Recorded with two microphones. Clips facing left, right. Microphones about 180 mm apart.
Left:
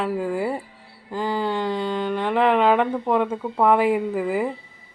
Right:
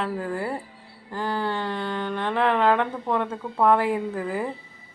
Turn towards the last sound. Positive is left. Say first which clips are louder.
# left 5 dB
turn(degrees=10)  # may be behind; listen again after turning